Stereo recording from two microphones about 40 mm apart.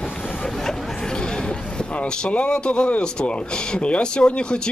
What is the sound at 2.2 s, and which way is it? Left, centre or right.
Speech, left.